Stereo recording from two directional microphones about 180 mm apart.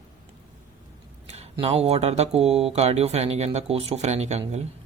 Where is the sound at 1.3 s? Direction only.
35° right (ahead or behind).